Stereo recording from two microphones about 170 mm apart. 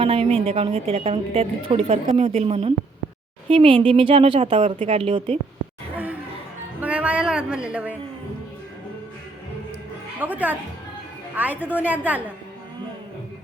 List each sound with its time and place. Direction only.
0.0 s a woman's voice: 35° right (ahead or behind)
6.8 s a sound: 5° right (ahead or behind)
10.2 s a woman's voice: 10° right (ahead or behind)